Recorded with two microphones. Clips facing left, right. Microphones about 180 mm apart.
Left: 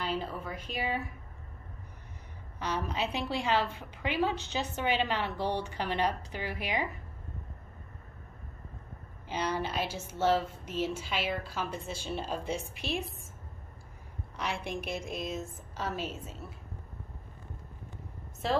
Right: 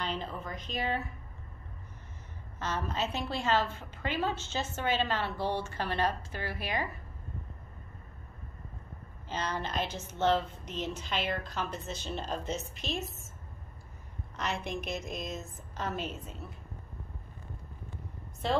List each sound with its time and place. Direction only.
0.0 s a woman's voice: 5° left (ahead or behind)
2.6 s a woman's voice: 15° left (ahead or behind)
9.3 s a woman's voice: 10° left (ahead or behind)
14.3 s a woman's voice: 10° left (ahead or behind)
18.4 s a woman's voice: centre (ahead or behind)